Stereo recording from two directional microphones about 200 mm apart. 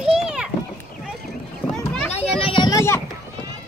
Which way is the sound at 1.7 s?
5° left (ahead or behind).